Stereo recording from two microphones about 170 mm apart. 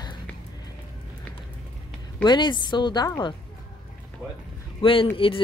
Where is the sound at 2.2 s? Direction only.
25° left (ahead or behind).